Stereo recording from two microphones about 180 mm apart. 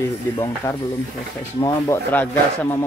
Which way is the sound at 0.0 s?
15° left (ahead or behind).